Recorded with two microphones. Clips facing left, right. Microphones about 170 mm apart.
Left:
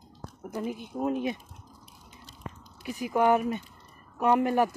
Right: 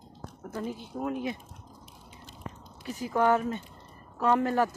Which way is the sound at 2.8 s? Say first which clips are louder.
Left 1 dB; 15° left (ahead or behind).